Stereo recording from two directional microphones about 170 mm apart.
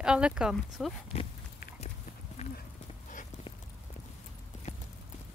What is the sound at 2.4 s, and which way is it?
Clip-clop, 40° left (ahead or behind).